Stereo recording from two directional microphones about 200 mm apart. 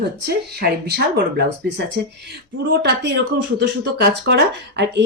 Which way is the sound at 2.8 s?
55° right (ahead or behind).